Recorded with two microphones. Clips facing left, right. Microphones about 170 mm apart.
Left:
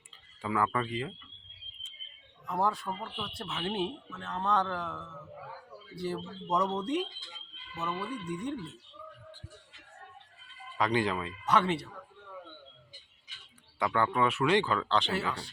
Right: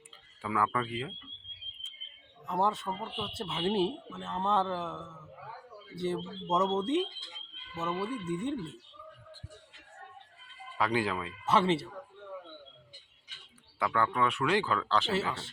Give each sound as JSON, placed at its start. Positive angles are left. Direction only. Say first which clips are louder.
{"t": 0.4, "sound": "speech", "louder": "left 1 dB", "side_deg": 0}
{"t": 2.5, "sound": "speech", "louder": "right 1 dB", "side_deg": -25}
{"t": 5.9, "sound": "speech", "louder": "right 2 dB", "side_deg": -25}
{"t": 10.8, "sound": "speech", "louder": "left 1 dB", "side_deg": -5}
{"t": 11.4, "sound": "speech", "louder": "right 1 dB", "side_deg": -25}
{"t": 13.7, "sound": "speech", "louder": "left 1 dB", "side_deg": 0}